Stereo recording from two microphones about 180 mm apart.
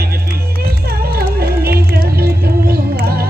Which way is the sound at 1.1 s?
60° right (ahead or behind).